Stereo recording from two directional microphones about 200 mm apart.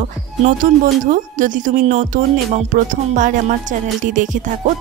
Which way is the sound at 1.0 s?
40° right (ahead or behind).